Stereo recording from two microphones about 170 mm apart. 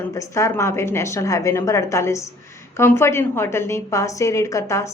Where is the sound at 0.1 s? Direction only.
20° left (ahead or behind).